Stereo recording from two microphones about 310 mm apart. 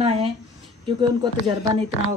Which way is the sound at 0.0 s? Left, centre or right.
Centre.